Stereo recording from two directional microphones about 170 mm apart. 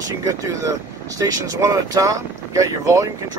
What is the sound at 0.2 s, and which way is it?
Speech, 20° right (ahead or behind).